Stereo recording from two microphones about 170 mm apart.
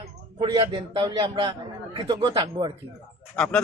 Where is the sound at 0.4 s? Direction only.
30° right (ahead or behind).